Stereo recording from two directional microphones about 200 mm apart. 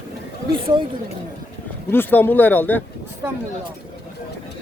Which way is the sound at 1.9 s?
10° left (ahead or behind).